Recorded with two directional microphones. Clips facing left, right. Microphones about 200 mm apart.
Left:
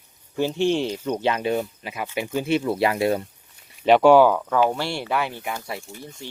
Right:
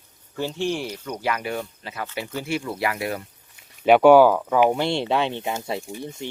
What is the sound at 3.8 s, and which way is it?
Speech, 5° right (ahead or behind).